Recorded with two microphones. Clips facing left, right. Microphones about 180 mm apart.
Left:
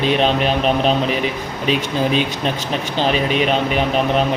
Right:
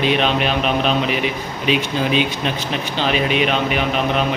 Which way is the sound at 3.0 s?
40° left (ahead or behind).